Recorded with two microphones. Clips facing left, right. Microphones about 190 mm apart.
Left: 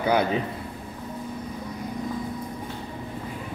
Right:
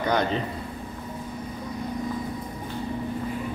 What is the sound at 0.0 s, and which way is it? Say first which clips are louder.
Speech: left 2 dB; 10° left (ahead or behind).